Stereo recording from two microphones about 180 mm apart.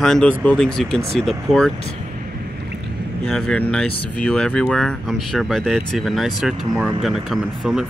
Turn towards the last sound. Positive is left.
turn(degrees=0)  # may be behind; listen again after turning